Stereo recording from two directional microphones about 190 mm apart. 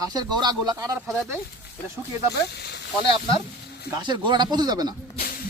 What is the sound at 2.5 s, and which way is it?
Speech, 60° left (ahead or behind).